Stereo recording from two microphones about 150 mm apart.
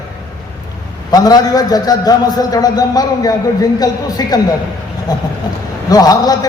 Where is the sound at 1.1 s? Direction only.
25° left (ahead or behind).